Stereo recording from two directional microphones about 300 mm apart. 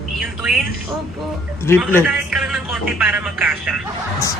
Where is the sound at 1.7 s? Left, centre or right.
Centre.